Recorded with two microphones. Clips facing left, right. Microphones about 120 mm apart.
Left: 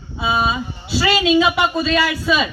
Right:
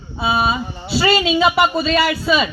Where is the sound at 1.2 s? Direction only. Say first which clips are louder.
Even; 5° right (ahead or behind).